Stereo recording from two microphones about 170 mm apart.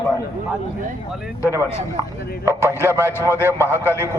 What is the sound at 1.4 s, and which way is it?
Speech, 15° right (ahead or behind).